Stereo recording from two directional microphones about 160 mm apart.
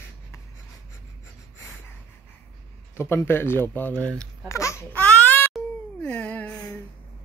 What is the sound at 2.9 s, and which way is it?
Speech, 15° left (ahead or behind).